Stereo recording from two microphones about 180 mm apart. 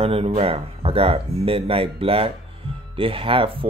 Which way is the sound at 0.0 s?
35° right (ahead or behind).